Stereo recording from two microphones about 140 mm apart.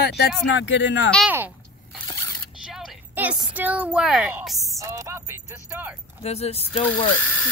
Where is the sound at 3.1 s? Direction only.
10° right (ahead or behind).